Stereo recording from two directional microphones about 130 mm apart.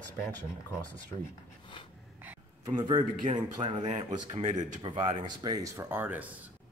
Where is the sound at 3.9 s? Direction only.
65° right (ahead or behind).